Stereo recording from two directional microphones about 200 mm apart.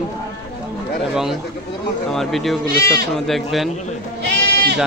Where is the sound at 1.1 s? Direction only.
Centre (ahead or behind).